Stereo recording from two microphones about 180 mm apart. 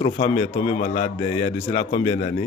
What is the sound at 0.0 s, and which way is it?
A man's voice, 35° left (ahead or behind).